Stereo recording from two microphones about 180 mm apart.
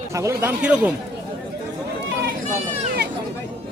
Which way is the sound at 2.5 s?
60° right (ahead or behind).